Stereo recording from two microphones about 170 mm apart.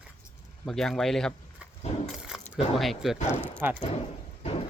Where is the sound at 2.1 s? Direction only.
5° right (ahead or behind).